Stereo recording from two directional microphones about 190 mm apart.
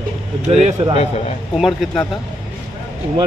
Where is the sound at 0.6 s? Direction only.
35° right (ahead or behind).